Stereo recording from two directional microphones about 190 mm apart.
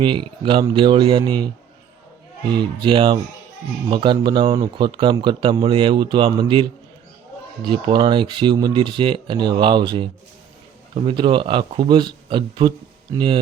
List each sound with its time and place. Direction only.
0.0 s speech: 25° right (ahead or behind)
2.5 s speech: 25° right (ahead or behind)